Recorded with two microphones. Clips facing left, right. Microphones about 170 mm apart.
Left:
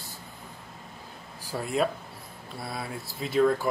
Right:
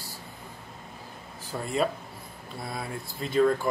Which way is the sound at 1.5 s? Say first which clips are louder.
Left 1 dB; centre (ahead or behind).